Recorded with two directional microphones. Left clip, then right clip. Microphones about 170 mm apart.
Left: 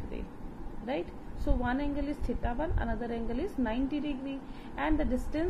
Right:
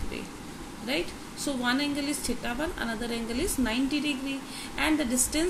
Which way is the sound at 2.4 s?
20° right (ahead or behind).